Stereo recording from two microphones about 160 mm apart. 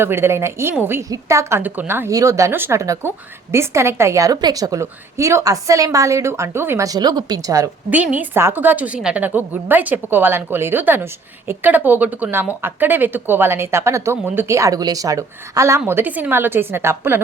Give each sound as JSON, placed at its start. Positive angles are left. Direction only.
{"t": 0.0, "sound": "a woman's voice", "side_deg": -15}
{"t": 7.9, "sound": "a woman's voice", "side_deg": -10}